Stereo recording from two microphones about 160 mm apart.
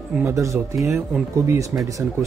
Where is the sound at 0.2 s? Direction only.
20° right (ahead or behind).